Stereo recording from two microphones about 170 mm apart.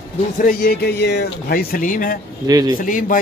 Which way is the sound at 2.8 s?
55° left (ahead or behind).